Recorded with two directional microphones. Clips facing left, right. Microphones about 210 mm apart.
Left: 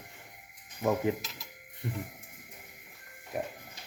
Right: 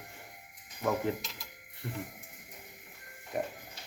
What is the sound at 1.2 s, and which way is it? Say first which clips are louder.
Mechanisms: even; centre (ahead or behind).